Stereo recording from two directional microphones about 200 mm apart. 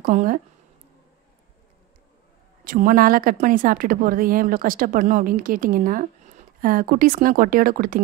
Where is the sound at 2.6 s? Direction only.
45° right (ahead or behind).